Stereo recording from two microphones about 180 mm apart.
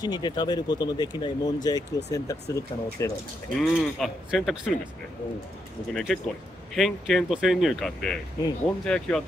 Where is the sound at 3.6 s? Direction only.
Centre (ahead or behind).